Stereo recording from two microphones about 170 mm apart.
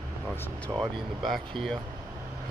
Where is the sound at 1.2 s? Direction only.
Centre (ahead or behind).